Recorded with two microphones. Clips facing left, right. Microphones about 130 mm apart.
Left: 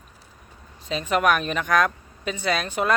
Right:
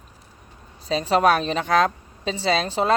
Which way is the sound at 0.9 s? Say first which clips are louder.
Right 3 dB; 35° right (ahead or behind).